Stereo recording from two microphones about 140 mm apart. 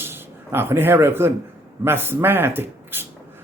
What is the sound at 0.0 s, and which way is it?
Speech, 15° right (ahead or behind).